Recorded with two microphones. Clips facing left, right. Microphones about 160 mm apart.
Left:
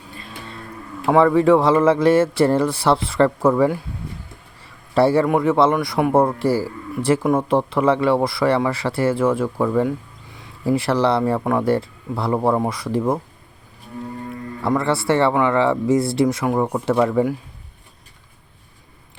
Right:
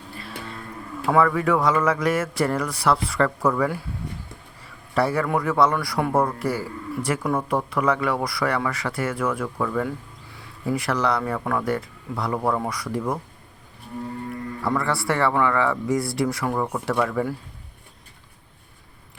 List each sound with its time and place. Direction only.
1.0 s speech: 25° left (ahead or behind)
4.9 s speech: 30° left (ahead or behind)
14.3 s speech: 25° left (ahead or behind)